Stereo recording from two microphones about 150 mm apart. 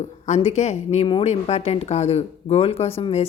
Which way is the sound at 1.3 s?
45° left (ahead or behind).